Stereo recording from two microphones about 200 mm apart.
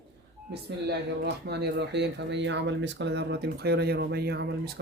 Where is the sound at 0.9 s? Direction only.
55° right (ahead or behind).